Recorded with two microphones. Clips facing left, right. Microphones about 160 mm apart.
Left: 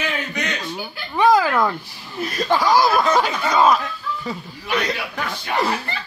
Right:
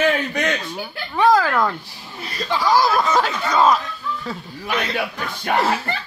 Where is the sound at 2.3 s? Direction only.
50° left (ahead or behind).